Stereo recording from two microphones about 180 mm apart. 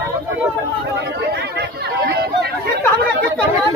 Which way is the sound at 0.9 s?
70° right (ahead or behind).